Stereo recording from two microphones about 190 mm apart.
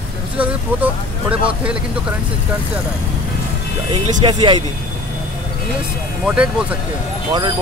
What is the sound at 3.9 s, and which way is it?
Speech, 25° right (ahead or behind).